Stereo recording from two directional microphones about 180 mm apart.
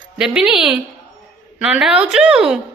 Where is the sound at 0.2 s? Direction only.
5° right (ahead or behind).